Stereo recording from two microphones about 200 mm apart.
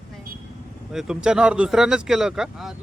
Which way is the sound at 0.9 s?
5° right (ahead or behind).